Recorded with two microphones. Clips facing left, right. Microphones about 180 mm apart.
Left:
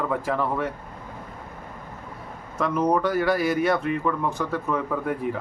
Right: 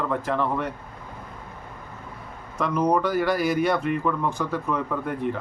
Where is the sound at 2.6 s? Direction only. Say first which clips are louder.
Even; centre (ahead or behind).